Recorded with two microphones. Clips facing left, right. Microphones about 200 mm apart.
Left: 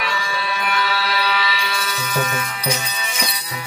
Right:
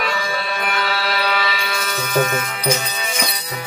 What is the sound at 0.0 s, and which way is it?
Music, 50° right (ahead or behind).